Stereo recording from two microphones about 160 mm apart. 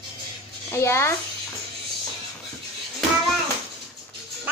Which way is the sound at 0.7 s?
15° left (ahead or behind).